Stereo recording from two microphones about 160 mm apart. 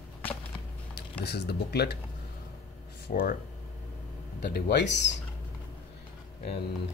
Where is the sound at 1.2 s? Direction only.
90° left.